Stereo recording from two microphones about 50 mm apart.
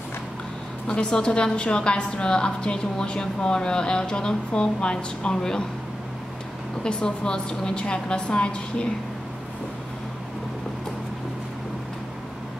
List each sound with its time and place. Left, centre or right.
0.8 s a woman's voice: left
6.8 s a woman's voice: centre